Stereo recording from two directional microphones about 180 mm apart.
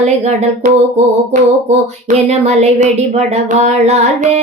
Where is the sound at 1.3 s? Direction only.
45° right (ahead or behind).